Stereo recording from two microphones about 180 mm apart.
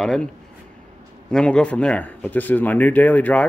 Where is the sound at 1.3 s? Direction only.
5° left (ahead or behind).